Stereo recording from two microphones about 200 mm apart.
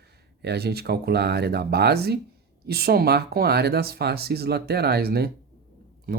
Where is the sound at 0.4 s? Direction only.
55° right (ahead or behind).